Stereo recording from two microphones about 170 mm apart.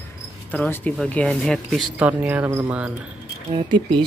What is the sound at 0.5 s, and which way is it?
Speech, 10° left (ahead or behind).